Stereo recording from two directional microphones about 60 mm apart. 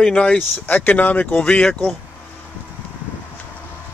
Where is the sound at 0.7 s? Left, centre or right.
Left.